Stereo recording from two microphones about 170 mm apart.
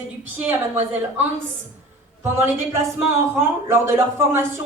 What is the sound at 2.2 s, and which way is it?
A man's voice, 15° right (ahead or behind).